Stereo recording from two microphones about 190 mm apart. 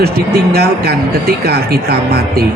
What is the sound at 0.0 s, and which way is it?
Speech, 55° right (ahead or behind).